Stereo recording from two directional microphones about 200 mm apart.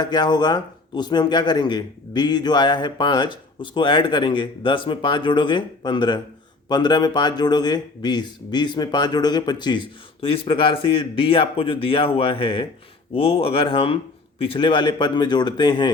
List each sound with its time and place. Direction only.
0.0 s a man's voice: 20° left (ahead or behind)